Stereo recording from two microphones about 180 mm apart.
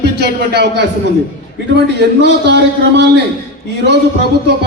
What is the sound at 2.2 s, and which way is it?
Speech, 70° right (ahead or behind).